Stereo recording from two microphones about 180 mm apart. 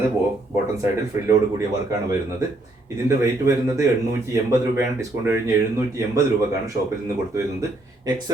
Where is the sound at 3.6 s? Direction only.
15° right (ahead or behind).